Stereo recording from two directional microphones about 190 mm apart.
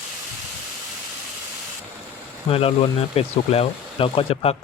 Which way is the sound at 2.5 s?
30° left (ahead or behind).